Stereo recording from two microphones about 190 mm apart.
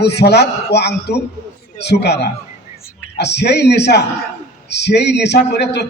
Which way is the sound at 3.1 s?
60° left (ahead or behind).